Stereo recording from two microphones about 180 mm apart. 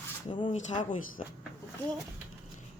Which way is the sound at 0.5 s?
40° left (ahead or behind).